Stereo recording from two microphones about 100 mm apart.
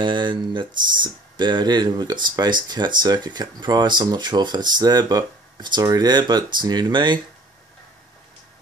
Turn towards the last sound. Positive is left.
turn(degrees=-50)  # may be behind; listen again after turning